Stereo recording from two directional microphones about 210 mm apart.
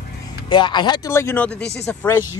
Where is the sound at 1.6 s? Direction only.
55° left (ahead or behind).